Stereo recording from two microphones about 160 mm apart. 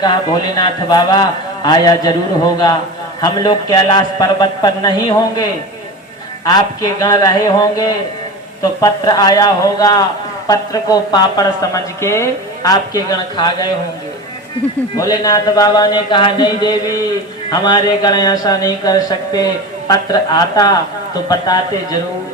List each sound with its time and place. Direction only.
0.0 s a man's voice: 25° left (ahead or behind)
14.9 s a man's voice: 25° left (ahead or behind)